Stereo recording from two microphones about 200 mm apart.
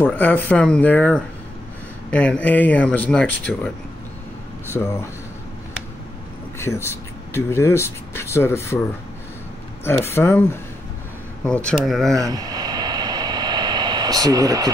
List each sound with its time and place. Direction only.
0.0 s speech: 10° left (ahead or behind)
4.7 s speech: 10° left (ahead or behind)
6.6 s speech: 10° left (ahead or behind)
9.8 s speech: 10° left (ahead or behind)
12.1 s vehicle: 15° right (ahead or behind)